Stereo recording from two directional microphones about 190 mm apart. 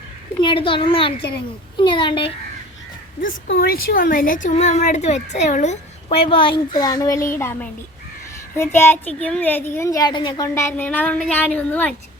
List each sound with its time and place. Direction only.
0.4 s a child's voice: 25° left (ahead or behind)
3.2 s a child's voice: 45° left (ahead or behind); by 11.9 s 10° left (ahead or behind)